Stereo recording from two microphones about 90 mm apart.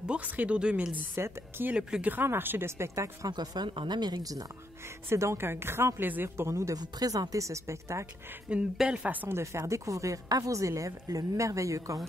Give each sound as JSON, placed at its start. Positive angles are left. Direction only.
{"t": 0.0, "sound": "speech", "side_deg": -15}
{"t": 1.1, "sound": "speech", "side_deg": -30}
{"t": 1.7, "sound": "speech", "side_deg": -10}
{"t": 3.3, "sound": "speech", "side_deg": -50}
{"t": 5.1, "sound": "speech", "side_deg": -30}
{"t": 6.8, "sound": "speech", "side_deg": -45}
{"t": 8.5, "sound": "speech", "side_deg": -10}
{"t": 9.4, "sound": "speech", "side_deg": -35}